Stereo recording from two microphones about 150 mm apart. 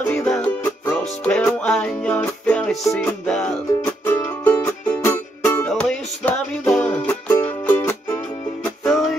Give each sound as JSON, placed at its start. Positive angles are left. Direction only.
{"t": 0.0, "sound": "music", "side_deg": 10}
{"t": 3.8, "sound": "music", "side_deg": 15}